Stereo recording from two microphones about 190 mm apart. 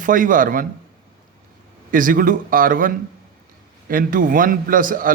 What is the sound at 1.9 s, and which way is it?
A man's voice, 45° right (ahead or behind).